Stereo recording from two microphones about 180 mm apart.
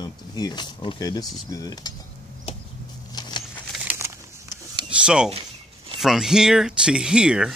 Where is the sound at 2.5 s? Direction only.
35° left (ahead or behind).